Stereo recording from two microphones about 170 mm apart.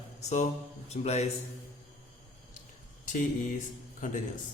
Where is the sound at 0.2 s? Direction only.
40° left (ahead or behind).